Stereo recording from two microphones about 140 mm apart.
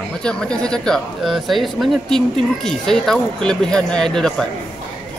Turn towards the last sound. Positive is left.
turn(degrees=5)  # may be behind; listen again after turning